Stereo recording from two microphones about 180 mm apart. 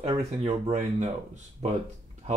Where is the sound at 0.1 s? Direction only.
30° right (ahead or behind).